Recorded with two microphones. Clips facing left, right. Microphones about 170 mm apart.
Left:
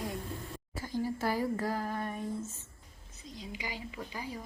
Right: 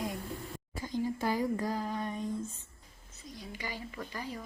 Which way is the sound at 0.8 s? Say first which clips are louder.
Right 1 dB; 20° right (ahead or behind).